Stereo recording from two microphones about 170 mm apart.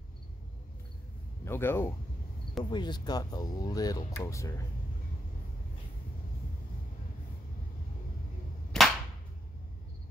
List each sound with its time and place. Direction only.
1.4 s speech: 15° left (ahead or behind)
2.7 s speech: 25° left (ahead or behind)
8.7 s clapping: 5° left (ahead or behind)